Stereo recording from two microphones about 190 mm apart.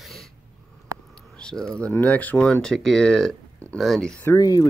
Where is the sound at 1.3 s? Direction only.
5° left (ahead or behind); by 4.7 s 20° left (ahead or behind).